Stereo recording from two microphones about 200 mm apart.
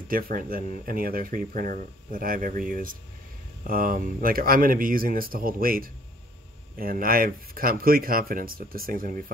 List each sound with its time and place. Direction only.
0.1 s speech: 45° right (ahead or behind)